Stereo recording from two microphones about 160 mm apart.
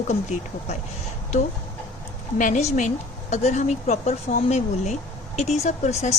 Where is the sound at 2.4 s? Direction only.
50° left (ahead or behind).